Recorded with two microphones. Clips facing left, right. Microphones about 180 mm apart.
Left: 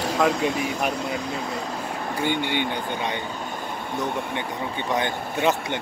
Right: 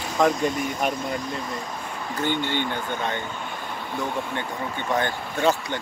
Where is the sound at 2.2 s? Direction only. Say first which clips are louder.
Even; 10° left (ahead or behind).